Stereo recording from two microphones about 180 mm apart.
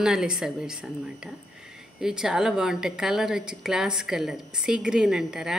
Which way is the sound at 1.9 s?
5° right (ahead or behind).